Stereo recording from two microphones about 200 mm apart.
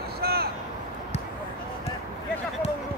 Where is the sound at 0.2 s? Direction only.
50° right (ahead or behind).